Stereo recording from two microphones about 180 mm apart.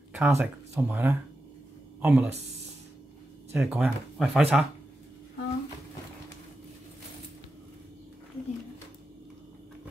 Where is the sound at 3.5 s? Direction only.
15° right (ahead or behind).